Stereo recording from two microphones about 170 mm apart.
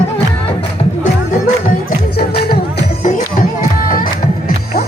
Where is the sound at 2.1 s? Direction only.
65° left (ahead or behind).